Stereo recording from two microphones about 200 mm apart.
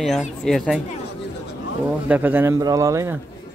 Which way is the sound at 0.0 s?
Centre (ahead or behind).